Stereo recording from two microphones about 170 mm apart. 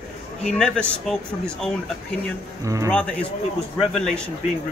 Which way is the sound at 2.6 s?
20° right (ahead or behind).